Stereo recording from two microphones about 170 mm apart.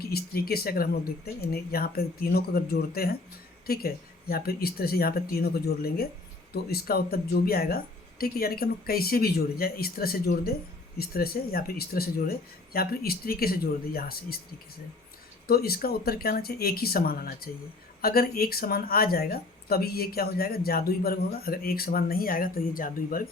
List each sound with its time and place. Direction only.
0.0 s speech: 65° left (ahead or behind)
15.4 s speech: 65° left (ahead or behind)